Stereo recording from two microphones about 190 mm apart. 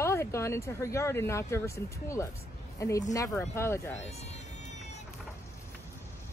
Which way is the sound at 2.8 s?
15° left (ahead or behind).